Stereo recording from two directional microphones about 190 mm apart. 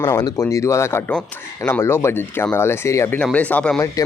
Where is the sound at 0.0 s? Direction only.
20° left (ahead or behind).